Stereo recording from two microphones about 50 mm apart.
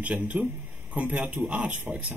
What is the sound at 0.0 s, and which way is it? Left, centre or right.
Speech, right.